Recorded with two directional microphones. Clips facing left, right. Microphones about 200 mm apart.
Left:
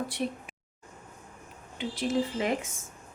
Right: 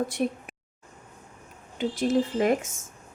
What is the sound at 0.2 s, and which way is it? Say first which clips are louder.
Speech: right 4 dB; 50° right (ahead or behind).